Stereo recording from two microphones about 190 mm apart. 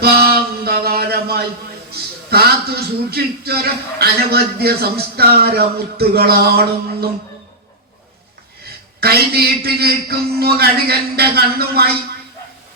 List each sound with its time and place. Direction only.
0.6 s a sound: 55° right (ahead or behind)
1.9 s a man's voice: 55° right (ahead or behind)
9.0 s a man's voice: 55° right (ahead or behind)